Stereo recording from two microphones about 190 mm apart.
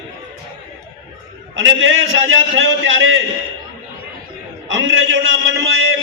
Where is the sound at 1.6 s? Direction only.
90° right.